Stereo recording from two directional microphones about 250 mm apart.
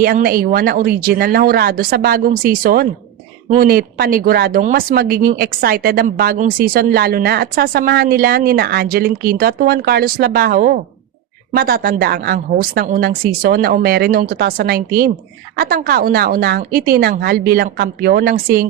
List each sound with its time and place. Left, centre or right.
0.0 s speech: right